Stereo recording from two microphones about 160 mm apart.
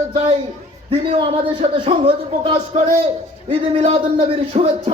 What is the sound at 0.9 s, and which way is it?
Speech, 35° right (ahead or behind).